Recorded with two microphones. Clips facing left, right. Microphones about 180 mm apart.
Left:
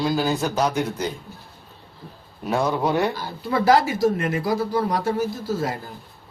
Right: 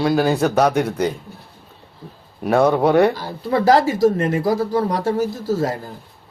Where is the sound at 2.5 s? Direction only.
60° right (ahead or behind).